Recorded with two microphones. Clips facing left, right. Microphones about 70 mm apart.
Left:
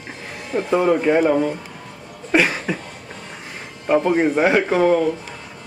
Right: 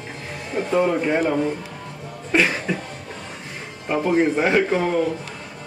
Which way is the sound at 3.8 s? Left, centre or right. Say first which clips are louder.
Left 2 dB; centre.